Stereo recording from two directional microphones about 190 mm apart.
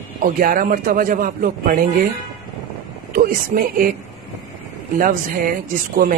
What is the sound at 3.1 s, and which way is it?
Speech, 50° right (ahead or behind).